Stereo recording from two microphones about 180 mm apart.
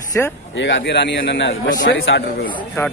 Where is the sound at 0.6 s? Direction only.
80° left.